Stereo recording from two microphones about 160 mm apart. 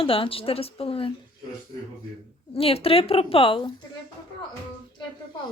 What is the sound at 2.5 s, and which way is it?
Speech, 35° left (ahead or behind).